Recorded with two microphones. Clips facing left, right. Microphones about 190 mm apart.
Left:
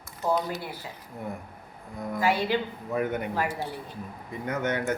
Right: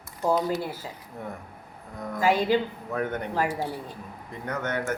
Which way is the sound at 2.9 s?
5° left (ahead or behind).